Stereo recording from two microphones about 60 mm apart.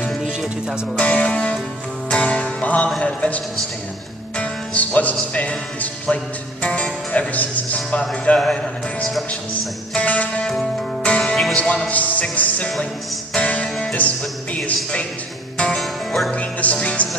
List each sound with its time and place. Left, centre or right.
0.1 s music: centre
0.9 s music: centre
6.6 s a man's voice: left
9.9 s music: left
10.4 s music: centre
11.5 s speech: centre
11.9 s music: left
15.8 s music: centre
16.3 s music: left